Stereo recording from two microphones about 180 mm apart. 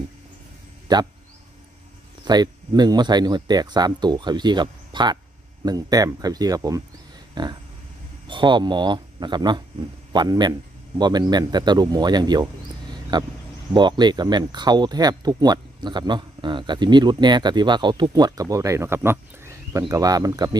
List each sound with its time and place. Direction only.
0.9 s speech: 20° right (ahead or behind)
2.2 s speech: 25° right (ahead or behind)
12.9 s a sound: 25° right (ahead or behind)
13.7 s speech: 25° right (ahead or behind)